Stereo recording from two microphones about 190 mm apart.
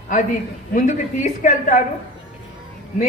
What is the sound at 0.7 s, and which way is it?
A man's voice, 40° left (ahead or behind).